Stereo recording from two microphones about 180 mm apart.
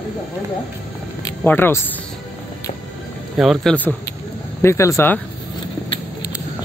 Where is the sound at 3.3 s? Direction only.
Centre (ahead or behind).